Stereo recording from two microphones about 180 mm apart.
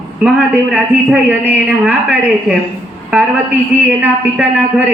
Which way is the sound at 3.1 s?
10° right (ahead or behind).